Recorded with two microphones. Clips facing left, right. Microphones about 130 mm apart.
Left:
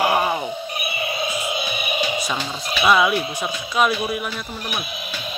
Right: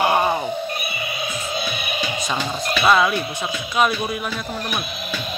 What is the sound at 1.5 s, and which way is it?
Music, 10° left (ahead or behind).